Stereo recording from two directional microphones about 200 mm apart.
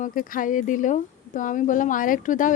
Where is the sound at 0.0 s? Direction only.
40° left (ahead or behind).